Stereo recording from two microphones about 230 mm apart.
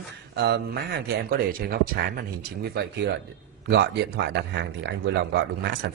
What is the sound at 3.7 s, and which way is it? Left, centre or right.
Speech, right.